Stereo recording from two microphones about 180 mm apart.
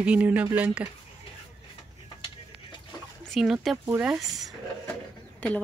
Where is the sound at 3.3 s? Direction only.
Centre (ahead or behind).